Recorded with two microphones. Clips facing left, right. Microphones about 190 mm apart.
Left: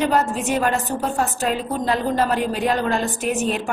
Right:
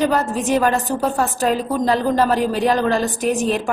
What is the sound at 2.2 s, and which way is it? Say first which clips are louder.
A woman's voice: right 3 dB; 35° right (ahead or behind).